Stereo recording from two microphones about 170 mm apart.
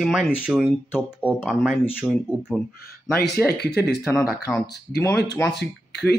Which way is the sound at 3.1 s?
70° left (ahead or behind).